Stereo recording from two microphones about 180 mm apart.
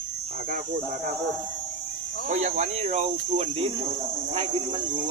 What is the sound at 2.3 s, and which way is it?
Speech, 40° right (ahead or behind).